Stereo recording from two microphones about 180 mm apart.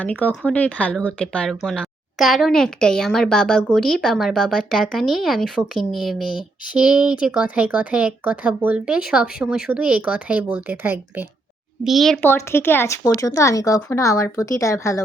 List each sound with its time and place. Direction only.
0.0 s speech: 5° left (ahead or behind); by 11.3 s 10° right (ahead or behind)
11.9 s speech: centre (ahead or behind)
12.2 s speech: 15° left (ahead or behind)